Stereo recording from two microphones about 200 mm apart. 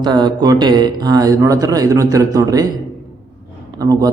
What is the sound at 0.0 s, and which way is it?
Speech, 20° right (ahead or behind).